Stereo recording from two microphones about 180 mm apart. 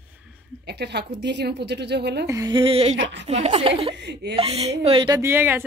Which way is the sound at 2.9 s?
85° right.